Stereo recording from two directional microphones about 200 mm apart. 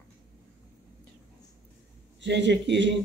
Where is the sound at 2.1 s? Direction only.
60° right (ahead or behind).